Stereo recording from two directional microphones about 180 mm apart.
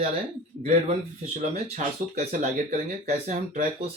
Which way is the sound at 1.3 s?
40° right (ahead or behind).